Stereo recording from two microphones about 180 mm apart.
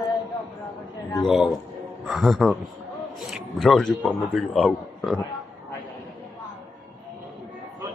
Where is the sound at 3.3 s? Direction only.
Centre (ahead or behind).